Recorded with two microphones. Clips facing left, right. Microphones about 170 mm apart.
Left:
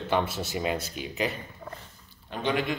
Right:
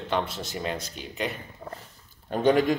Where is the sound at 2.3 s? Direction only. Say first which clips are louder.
Right 7 dB; 45° right (ahead or behind).